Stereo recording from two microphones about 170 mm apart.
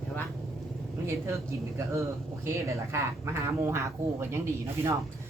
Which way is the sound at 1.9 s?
15° right (ahead or behind).